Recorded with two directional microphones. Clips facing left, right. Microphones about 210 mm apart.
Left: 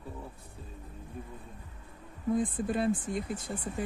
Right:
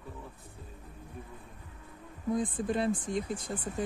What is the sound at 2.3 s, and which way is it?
Speech, 5° left (ahead or behind).